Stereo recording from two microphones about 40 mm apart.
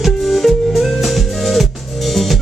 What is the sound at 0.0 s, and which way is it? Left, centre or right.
Music, centre.